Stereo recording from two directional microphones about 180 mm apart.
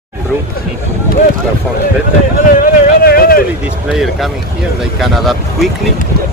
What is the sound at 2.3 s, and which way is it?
Vehicle, 50° left (ahead or behind).